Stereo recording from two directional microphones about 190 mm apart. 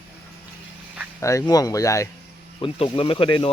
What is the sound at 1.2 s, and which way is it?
Speech, 15° left (ahead or behind).